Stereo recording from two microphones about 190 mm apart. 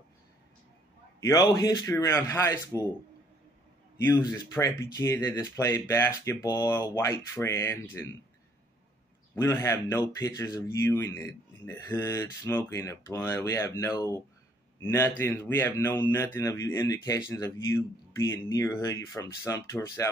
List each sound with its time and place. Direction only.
1.2 s speech: 20° left (ahead or behind)
4.0 s speech: 15° left (ahead or behind)
9.3 s speech: 15° left (ahead or behind)